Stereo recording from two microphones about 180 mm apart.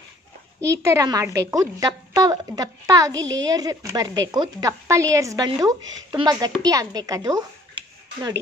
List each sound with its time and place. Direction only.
0.8 s a woman's voice: 20° right (ahead or behind)
3.2 s a child's voice: 90° right
3.4 s a woman's voice: 20° right (ahead or behind)